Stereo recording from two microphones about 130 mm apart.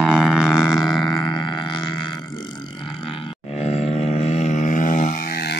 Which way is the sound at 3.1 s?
55° left (ahead or behind).